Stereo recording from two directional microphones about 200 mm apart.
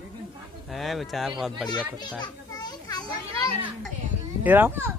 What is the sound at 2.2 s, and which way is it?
Children playing, 20° left (ahead or behind).